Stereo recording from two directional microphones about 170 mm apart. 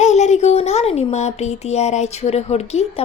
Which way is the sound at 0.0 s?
45° left (ahead or behind).